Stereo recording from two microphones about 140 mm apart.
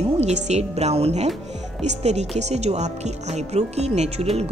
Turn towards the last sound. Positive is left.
turn(degrees=-50)  # may be behind; listen again after turning